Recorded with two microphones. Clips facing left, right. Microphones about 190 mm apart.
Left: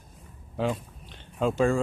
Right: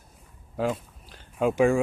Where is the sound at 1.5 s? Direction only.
15° right (ahead or behind).